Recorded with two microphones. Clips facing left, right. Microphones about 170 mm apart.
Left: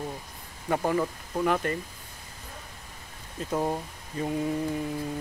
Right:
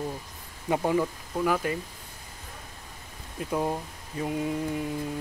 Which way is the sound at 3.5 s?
Centre (ahead or behind).